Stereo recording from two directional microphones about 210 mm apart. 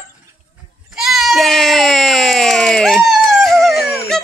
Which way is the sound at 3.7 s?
50° left (ahead or behind).